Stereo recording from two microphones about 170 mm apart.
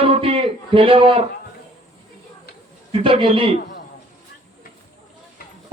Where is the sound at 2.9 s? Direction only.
30° right (ahead or behind).